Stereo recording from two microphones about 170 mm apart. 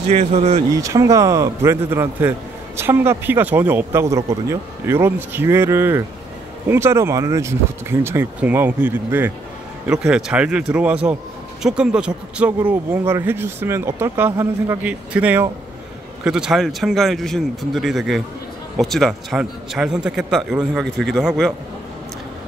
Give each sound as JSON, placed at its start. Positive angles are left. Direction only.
{"t": 0.1, "sound": "speech", "side_deg": -40}
{"t": 0.7, "sound": "a man's voice", "side_deg": -20}